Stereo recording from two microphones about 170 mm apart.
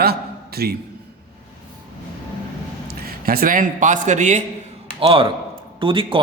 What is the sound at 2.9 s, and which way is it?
A man's voice, 60° right (ahead or behind).